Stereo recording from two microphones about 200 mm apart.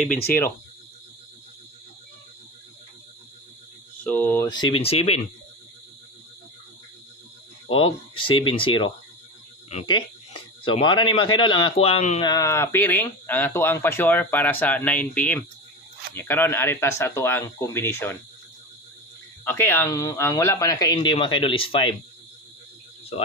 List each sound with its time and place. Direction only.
4.0 s speech: 10° left (ahead or behind)
4.5 s speech: 20° left (ahead or behind)
7.6 s a man's voice: 25° left (ahead or behind)
12.3 s speech: 15° left (ahead or behind)
19.4 s speech: 10° left (ahead or behind); by 21.9 s 25° left (ahead or behind)